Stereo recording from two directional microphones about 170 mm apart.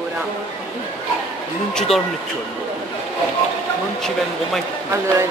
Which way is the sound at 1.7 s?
Centre (ahead or behind).